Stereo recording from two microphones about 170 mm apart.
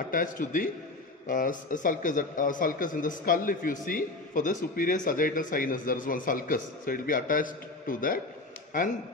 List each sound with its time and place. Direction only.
0.1 s a man's voice: 50° left (ahead or behind)